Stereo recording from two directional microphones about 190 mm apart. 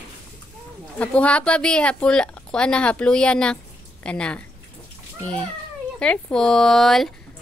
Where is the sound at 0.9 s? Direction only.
5° left (ahead or behind).